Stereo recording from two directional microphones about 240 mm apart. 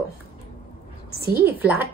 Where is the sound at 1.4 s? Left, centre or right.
Centre.